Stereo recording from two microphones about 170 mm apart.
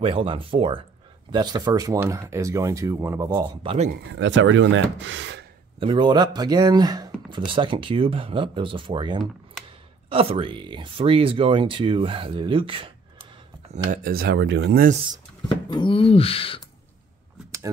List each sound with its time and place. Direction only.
0.0 s speech: 35° right (ahead or behind); by 3.3 s 15° right (ahead or behind)
3.3 s speech: 30° right (ahead or behind)
4.1 s speech: 90° right
5.8 s speech: 30° right (ahead or behind)
13.8 s speech: 65° right (ahead or behind)
15.4 s speech: 30° left (ahead or behind)